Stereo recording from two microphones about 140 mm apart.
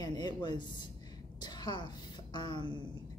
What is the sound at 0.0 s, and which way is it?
A woman's voice, 30° left (ahead or behind).